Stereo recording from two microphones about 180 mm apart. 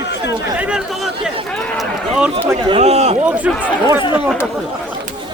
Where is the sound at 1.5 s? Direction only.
Centre (ahead or behind).